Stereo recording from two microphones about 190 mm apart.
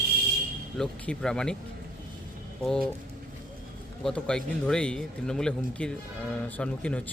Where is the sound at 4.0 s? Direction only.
5° left (ahead or behind).